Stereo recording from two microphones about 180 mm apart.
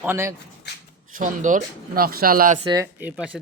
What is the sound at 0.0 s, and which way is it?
Speech, 15° right (ahead or behind).